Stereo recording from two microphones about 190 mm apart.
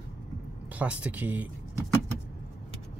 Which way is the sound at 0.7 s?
5° right (ahead or behind).